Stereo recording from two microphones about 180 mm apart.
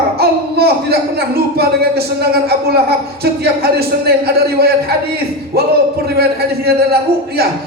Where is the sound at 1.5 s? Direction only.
60° right (ahead or behind).